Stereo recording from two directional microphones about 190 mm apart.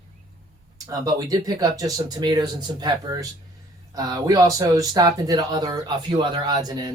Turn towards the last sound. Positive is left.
turn(degrees=-20)  # may be behind; listen again after turning